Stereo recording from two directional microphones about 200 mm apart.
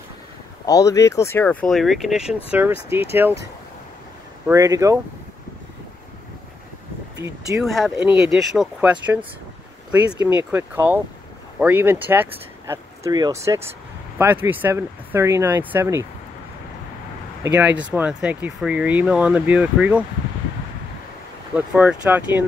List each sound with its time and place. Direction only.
0.7 s speech: 15° left (ahead or behind); by 3.3 s 10° right (ahead or behind)
4.5 s speech: 15° right (ahead or behind)
7.2 s speech: 15° right (ahead or behind)
7.6 s speech: centre (ahead or behind)
10.1 s speech: 15° right (ahead or behind)
17.4 s speech: 10° right (ahead or behind)
21.5 s speech: 5° right (ahead or behind)